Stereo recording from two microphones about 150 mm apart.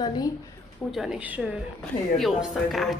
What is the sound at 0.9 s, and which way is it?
A woman's voice, 5° right (ahead or behind).